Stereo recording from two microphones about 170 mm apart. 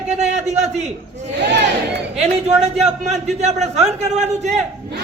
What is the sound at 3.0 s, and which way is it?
A man's voice, 40° right (ahead or behind).